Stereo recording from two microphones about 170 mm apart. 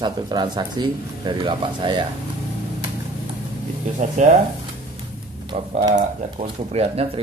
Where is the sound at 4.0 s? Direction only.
45° right (ahead or behind).